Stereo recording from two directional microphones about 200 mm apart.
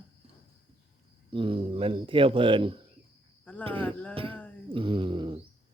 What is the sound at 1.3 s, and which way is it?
Speech, 25° right (ahead or behind).